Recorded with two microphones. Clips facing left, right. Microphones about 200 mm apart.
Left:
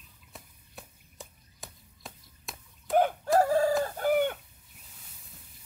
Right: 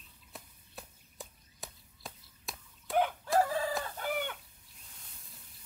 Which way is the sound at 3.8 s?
40° left (ahead or behind).